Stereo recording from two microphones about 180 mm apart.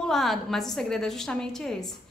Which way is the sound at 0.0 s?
Centre (ahead or behind).